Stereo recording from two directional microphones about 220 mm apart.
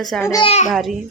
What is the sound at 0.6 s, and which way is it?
Speech, centre (ahead or behind).